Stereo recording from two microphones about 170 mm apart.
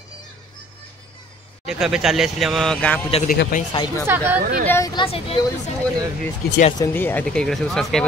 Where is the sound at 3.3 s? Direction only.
55° left (ahead or behind).